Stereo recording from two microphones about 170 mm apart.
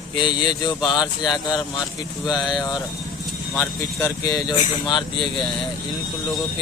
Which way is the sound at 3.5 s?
15° left (ahead or behind).